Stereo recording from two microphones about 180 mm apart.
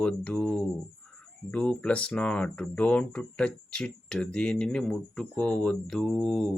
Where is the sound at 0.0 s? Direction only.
5° left (ahead or behind).